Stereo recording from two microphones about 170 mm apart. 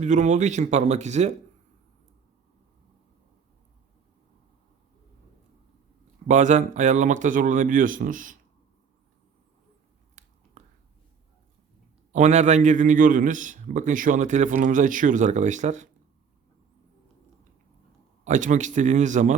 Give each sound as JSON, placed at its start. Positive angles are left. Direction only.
{"t": 0.0, "sound": "a man's voice", "side_deg": -45}
{"t": 6.2, "sound": "a man's voice", "side_deg": -45}
{"t": 10.2, "sound": "a sound", "side_deg": -45}
{"t": 12.1, "sound": "a man's voice", "side_deg": -45}
{"t": 18.3, "sound": "a man's voice", "side_deg": -45}